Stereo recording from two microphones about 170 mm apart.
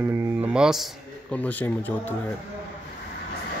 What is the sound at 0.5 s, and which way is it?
Speech, 5° right (ahead or behind).